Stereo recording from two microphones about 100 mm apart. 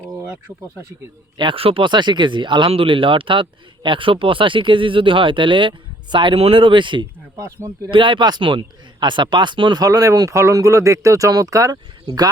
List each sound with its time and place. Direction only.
1.4 s a man's voice: 60° right (ahead or behind)
2.6 s a man's voice: 65° right (ahead or behind)
9.8 s speech: 35° right (ahead or behind)